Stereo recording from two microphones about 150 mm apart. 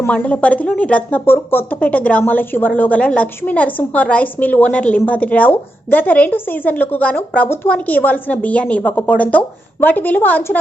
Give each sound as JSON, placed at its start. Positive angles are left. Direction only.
{"t": 0.0, "sound": "a woman's voice", "side_deg": 10}